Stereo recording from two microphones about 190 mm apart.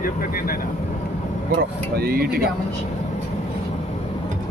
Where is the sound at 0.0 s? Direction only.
50° left (ahead or behind).